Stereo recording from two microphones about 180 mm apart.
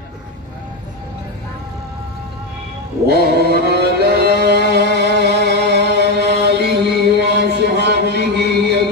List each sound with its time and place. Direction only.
3.1 s mantra: 65° right (ahead or behind)